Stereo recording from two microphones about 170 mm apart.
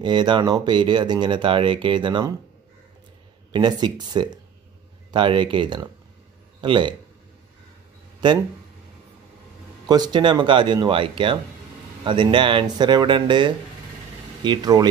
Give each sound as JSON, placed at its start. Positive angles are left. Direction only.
{"t": 0.0, "sound": "speech", "side_deg": -25}
{"t": 3.5, "sound": "speech", "side_deg": -25}
{"t": 8.2, "sound": "speech", "side_deg": -25}
{"t": 9.8, "sound": "speech", "side_deg": -25}